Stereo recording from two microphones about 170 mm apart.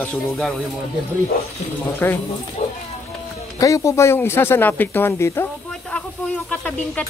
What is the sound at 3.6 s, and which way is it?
Speech, 20° left (ahead or behind).